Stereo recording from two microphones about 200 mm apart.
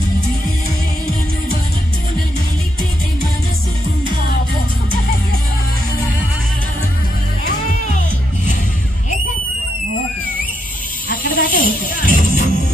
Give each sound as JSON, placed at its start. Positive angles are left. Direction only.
{"t": 11.1, "sound": "music", "side_deg": 45}